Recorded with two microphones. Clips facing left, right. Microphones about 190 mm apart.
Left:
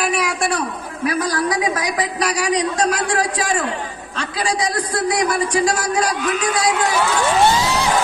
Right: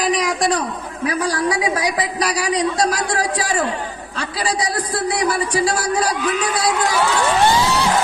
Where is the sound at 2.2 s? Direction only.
35° right (ahead or behind).